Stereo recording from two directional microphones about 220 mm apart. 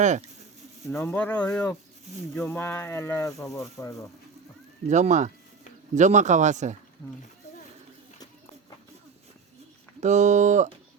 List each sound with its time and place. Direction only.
0.0 s speech: 35° right (ahead or behind)
0.9 s speech: 10° left (ahead or behind)
4.9 s speech: 30° right (ahead or behind)
10.0 s speech: 30° right (ahead or behind)